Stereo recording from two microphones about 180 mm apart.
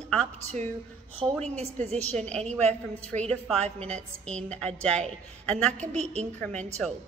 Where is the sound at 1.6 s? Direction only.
35° right (ahead or behind).